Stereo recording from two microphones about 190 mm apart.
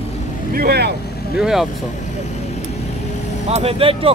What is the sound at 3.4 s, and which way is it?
Speech, 35° right (ahead or behind).